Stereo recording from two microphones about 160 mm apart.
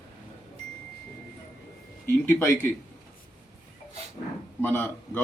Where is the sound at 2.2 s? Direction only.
15° left (ahead or behind).